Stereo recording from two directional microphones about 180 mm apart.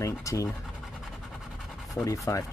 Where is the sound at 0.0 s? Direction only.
15° left (ahead or behind).